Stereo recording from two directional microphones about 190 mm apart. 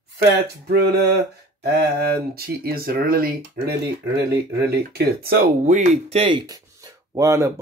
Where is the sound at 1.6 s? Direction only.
60° right (ahead or behind).